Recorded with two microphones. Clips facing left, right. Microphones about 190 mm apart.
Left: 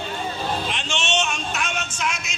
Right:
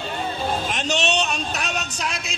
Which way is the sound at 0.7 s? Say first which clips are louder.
Right 3 dB; 40° right (ahead or behind).